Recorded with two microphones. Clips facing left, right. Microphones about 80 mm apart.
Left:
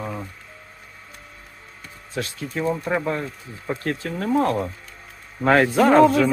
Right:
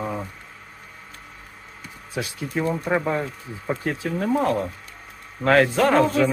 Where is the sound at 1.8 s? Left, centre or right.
Centre.